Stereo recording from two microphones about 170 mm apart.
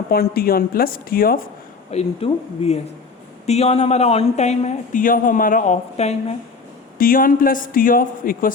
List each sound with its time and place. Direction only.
0.1 s speech: 60° left (ahead or behind)
1.9 s speech: 35° left (ahead or behind)
7.0 s speech: 55° left (ahead or behind)